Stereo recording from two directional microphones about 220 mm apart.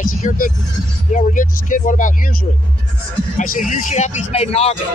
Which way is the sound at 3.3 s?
35° left (ahead or behind).